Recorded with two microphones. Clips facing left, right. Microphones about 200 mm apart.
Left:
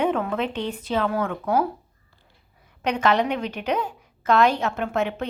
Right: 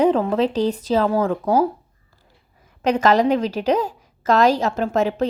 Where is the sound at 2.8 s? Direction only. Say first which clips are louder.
Right 5 dB; 40° right (ahead or behind).